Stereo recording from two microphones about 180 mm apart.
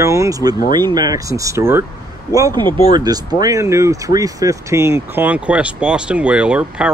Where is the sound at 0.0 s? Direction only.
15° right (ahead or behind).